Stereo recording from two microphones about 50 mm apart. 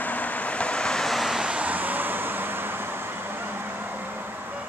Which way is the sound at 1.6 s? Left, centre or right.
Right.